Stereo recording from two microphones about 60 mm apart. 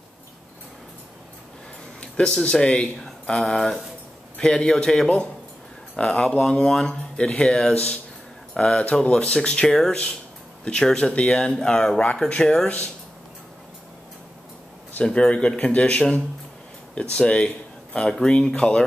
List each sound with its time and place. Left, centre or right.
2.0 s a sound: centre
2.4 s speech: centre
15.0 s speech: centre